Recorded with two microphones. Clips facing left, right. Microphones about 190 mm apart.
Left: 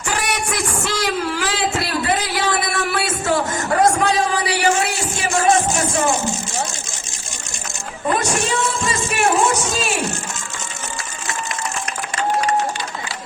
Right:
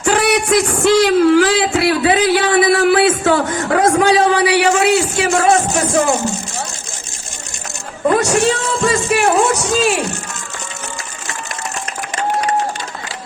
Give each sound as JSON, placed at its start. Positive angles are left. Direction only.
{"t": 0.0, "sound": "music", "side_deg": -60}
{"t": 0.9, "sound": "a sound", "side_deg": -60}
{"t": 8.2, "sound": "music", "side_deg": -65}